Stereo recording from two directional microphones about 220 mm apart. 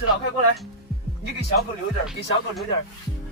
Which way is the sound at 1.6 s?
Centre (ahead or behind).